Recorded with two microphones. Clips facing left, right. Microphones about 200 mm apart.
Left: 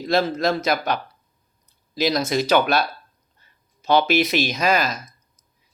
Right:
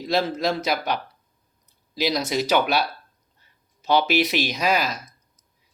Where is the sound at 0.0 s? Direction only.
10° right (ahead or behind).